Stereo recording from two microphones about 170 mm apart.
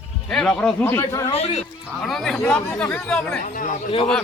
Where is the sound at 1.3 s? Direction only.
35° left (ahead or behind).